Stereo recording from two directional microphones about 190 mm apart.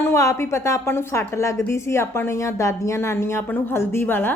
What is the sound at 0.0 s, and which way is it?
A woman's voice, 15° left (ahead or behind).